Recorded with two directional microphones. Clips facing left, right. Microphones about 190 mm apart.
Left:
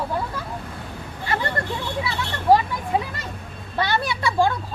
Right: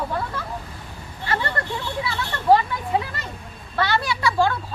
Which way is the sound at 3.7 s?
20° left (ahead or behind).